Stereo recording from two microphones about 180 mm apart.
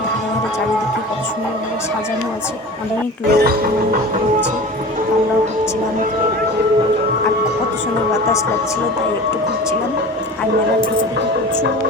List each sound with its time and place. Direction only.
3.2 s speech: 60° right (ahead or behind)